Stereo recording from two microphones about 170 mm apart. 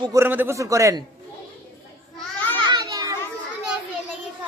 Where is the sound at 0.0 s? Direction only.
15° right (ahead or behind).